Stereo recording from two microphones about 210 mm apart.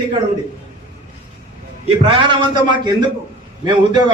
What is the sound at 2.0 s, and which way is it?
Speech, 20° right (ahead or behind).